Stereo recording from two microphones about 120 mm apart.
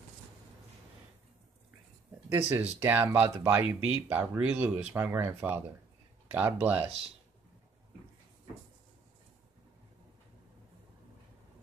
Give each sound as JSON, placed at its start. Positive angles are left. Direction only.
{"t": 2.2, "sound": "speech", "side_deg": -20}
{"t": 4.9, "sound": "speech", "side_deg": -20}